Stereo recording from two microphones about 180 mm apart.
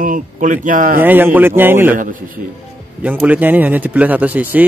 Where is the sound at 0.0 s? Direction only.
45° right (ahead or behind).